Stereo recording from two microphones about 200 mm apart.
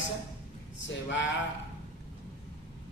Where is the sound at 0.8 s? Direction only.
65° left (ahead or behind).